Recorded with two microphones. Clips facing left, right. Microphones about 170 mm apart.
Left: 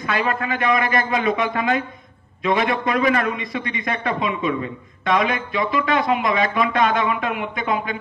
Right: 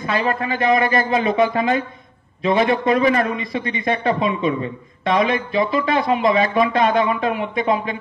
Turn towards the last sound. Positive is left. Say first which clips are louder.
# right 4 dB
turn(degrees=-30)  # may be behind; listen again after turning